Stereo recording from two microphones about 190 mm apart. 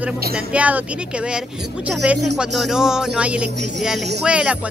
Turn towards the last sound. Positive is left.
turn(degrees=-5)  # may be behind; listen again after turning